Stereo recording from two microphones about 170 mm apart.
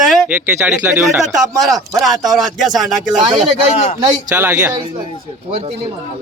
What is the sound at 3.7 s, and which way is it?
Speech, 40° left (ahead or behind).